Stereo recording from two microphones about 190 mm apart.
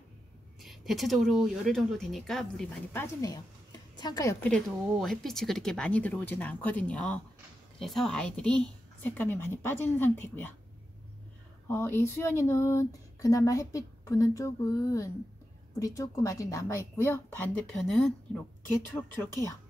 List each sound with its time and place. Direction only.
0.6 s speech: centre (ahead or behind)
11.6 s speech: 10° left (ahead or behind)